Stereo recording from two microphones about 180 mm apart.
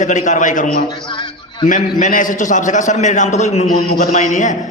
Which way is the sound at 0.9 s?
25° left (ahead or behind).